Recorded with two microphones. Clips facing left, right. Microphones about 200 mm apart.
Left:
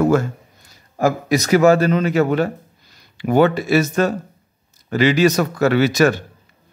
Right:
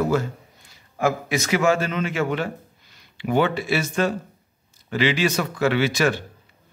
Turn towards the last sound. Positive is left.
turn(degrees=45)  # may be behind; listen again after turning